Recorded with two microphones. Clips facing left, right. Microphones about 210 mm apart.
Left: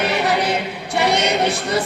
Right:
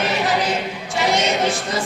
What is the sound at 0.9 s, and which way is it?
Choir, 60° left (ahead or behind).